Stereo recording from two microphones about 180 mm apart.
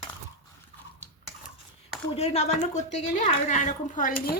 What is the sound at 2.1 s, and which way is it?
A woman's voice, 35° left (ahead or behind).